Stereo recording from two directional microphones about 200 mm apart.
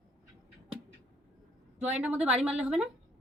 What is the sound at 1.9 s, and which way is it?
Speech, 5° right (ahead or behind).